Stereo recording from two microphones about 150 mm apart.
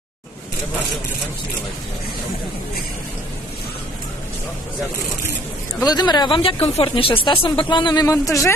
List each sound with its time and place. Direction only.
5.8 s a woman's voice: 25° left (ahead or behind)